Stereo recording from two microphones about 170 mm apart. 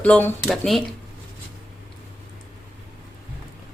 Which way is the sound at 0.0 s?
10° left (ahead or behind).